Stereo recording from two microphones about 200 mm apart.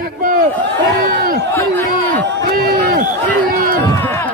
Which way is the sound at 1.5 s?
10° left (ahead or behind).